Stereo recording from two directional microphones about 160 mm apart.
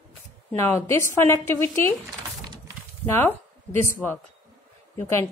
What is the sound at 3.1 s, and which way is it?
Speech, 10° left (ahead or behind).